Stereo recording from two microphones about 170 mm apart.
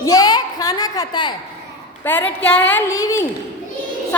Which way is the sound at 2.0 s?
10° left (ahead or behind).